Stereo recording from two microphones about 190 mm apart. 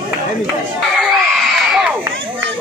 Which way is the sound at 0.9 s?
Centre (ahead or behind).